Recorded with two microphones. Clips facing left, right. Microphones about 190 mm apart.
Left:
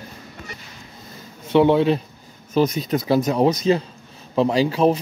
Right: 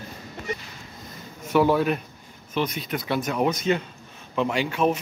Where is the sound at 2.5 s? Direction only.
40° left (ahead or behind).